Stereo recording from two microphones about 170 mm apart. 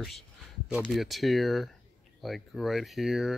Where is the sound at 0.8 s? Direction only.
Centre (ahead or behind).